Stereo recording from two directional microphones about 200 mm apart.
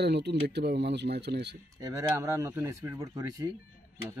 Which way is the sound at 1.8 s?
15° right (ahead or behind).